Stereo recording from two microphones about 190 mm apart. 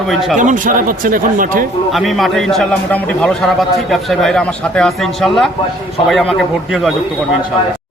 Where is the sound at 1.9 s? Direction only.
Centre (ahead or behind).